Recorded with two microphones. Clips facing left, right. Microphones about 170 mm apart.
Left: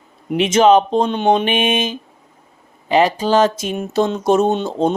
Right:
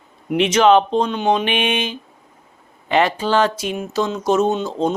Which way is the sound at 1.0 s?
25° left (ahead or behind).